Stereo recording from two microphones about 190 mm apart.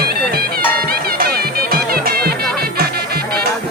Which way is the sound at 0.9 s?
55° right (ahead or behind).